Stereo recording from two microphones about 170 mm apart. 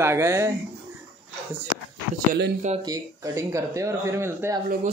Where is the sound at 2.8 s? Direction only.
20° right (ahead or behind).